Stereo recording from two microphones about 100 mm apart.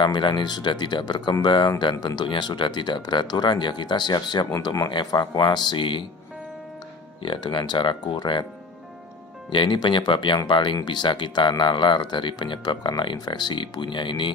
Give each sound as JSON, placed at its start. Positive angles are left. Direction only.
{"t": 0.0, "sound": "speech", "side_deg": 50}
{"t": 7.2, "sound": "speech", "side_deg": 50}
{"t": 9.5, "sound": "speech", "side_deg": 50}